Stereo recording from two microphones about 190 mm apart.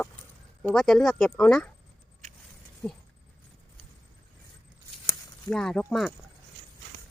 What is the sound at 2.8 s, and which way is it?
Speech, 5° left (ahead or behind).